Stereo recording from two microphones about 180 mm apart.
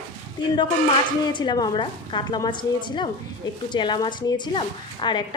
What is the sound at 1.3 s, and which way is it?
A woman's voice, 25° left (ahead or behind).